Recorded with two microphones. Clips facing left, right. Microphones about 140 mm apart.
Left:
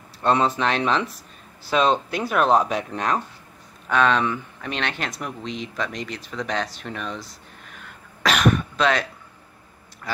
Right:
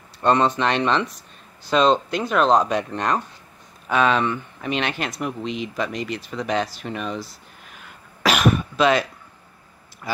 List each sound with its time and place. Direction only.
0.2 s speech: centre (ahead or behind)
10.1 s speech: 5° right (ahead or behind)